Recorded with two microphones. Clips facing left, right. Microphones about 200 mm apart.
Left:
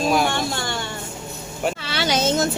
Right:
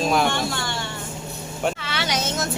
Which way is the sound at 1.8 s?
35° left (ahead or behind).